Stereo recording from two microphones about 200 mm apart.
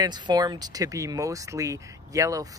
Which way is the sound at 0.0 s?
20° right (ahead or behind).